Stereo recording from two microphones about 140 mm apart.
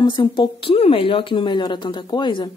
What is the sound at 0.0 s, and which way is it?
A woman's voice, 35° left (ahead or behind).